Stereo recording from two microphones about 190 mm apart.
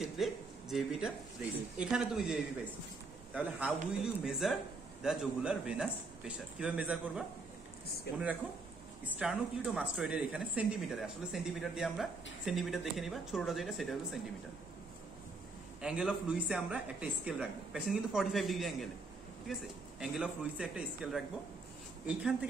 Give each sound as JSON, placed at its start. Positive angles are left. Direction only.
{"t": 0.0, "sound": "speech", "side_deg": 0}
{"t": 8.1, "sound": "speech", "side_deg": 55}
{"t": 9.0, "sound": "speech", "side_deg": -5}
{"t": 15.8, "sound": "speech", "side_deg": -5}